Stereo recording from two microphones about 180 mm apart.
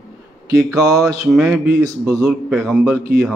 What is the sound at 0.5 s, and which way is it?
Mantra, 15° right (ahead or behind).